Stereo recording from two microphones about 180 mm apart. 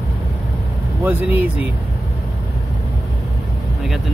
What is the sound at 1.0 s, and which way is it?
Speech, 10° right (ahead or behind).